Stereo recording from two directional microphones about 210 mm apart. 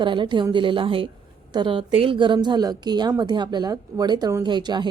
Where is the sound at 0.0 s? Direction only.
20° right (ahead or behind).